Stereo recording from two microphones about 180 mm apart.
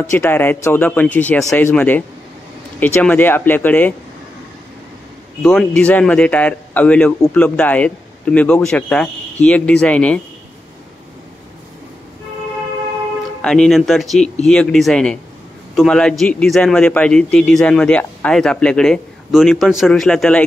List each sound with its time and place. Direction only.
0.1 s speech: 10° left (ahead or behind)
5.4 s speech: 5° left (ahead or behind)
13.4 s a man's voice: 5° left (ahead or behind)
14.2 s speech: 35° left (ahead or behind)
14.5 s a man's voice: 5° left (ahead or behind)